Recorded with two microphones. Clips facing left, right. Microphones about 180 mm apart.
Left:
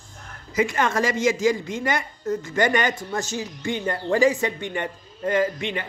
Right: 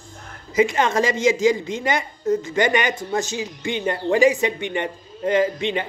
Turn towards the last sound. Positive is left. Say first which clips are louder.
# right 3 dB
turn(degrees=-20)  # may be behind; listen again after turning